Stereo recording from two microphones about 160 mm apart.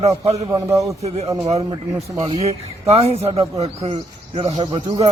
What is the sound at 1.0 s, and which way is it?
A man's voice, 40° right (ahead or behind).